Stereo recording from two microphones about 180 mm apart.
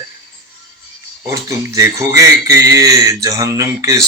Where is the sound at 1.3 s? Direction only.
20° right (ahead or behind).